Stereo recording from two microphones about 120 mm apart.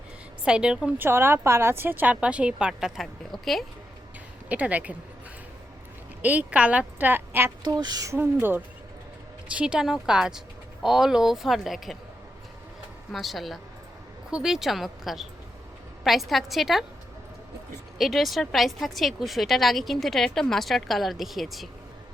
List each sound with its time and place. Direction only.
0.4 s speech: 5° right (ahead or behind)
1.0 s speech: 20° right (ahead or behind); by 3.6 s centre (ahead or behind)
4.4 s speech: 10° right (ahead or behind)
6.2 s speech: 10° right (ahead or behind)
7.6 s speech: 35° right (ahead or behind); by 11.9 s centre (ahead or behind)
13.1 s speech: centre (ahead or behind)
17.9 s speech: centre (ahead or behind)